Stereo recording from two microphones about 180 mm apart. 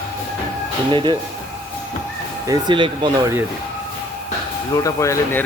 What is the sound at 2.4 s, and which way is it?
Speech, 20° right (ahead or behind).